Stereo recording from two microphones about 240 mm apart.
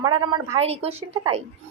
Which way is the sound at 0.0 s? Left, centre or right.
Centre.